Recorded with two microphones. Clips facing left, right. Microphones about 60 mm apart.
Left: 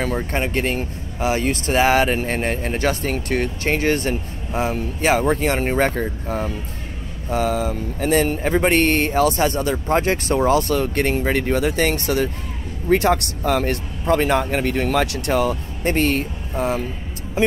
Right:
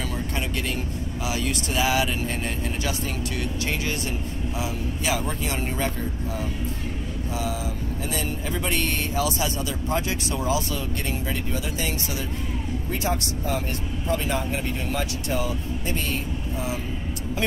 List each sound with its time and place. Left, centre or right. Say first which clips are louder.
0.0 s speech: left 7 dB; left